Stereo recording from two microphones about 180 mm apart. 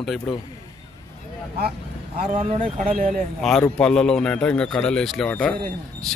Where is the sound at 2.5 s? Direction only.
45° right (ahead or behind).